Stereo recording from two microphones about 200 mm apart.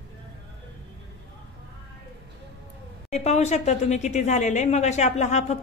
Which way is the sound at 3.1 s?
35° left (ahead or behind).